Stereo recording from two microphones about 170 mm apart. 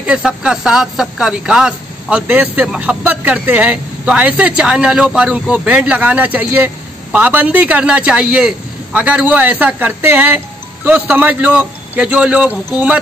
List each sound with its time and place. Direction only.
0.0 s speech: 5° right (ahead or behind)